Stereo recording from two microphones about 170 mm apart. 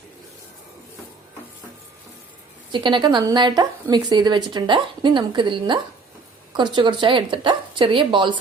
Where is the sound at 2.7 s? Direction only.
25° right (ahead or behind).